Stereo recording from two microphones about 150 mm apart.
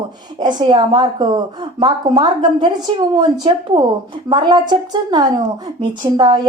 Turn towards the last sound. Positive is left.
turn(degrees=-30)  # may be behind; listen again after turning